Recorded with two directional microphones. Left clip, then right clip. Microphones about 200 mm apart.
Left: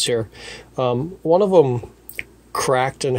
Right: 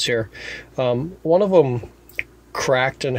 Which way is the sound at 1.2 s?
10° left (ahead or behind).